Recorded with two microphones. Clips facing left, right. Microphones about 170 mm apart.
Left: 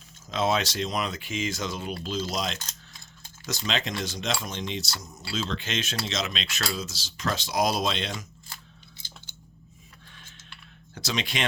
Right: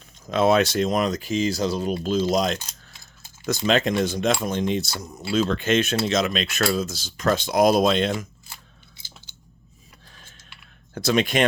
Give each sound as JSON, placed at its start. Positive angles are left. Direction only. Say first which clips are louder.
{"t": 0.3, "sound": "speech", "louder": "right 7 dB", "side_deg": -55}
{"t": 3.7, "sound": "speech", "louder": "right 10 dB", "side_deg": -50}
{"t": 10.9, "sound": "speech", "louder": "right 10 dB", "side_deg": -50}